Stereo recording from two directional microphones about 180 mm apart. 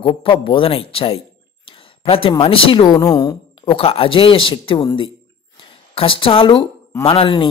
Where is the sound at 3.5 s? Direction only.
30° left (ahead or behind).